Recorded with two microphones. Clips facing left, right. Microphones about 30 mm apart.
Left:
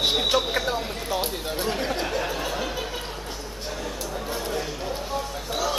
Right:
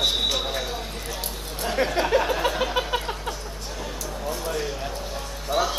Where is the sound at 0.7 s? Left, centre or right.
Left.